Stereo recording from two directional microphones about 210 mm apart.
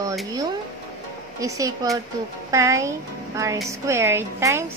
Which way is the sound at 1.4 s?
15° right (ahead or behind).